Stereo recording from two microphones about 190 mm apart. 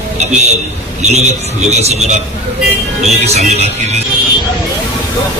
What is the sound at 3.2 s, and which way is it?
Speech, 35° right (ahead or behind).